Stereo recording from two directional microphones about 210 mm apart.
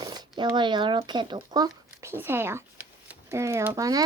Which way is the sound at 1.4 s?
20° right (ahead or behind).